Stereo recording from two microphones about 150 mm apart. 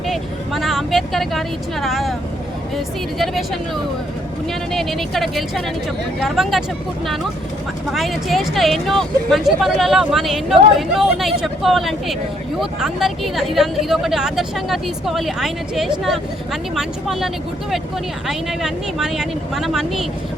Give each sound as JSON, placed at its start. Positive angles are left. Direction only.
{"t": 0.1, "sound": "vehicle", "side_deg": 0}
{"t": 2.7, "sound": "speech", "side_deg": 0}
{"t": 4.7, "sound": "speech", "side_deg": 0}
{"t": 7.9, "sound": "speech", "side_deg": 0}